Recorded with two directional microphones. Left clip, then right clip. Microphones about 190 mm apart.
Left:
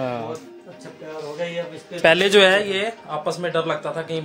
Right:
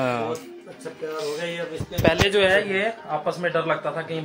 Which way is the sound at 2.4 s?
65° left (ahead or behind).